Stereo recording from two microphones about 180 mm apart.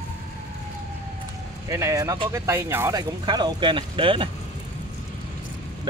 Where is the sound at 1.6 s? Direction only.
15° right (ahead or behind).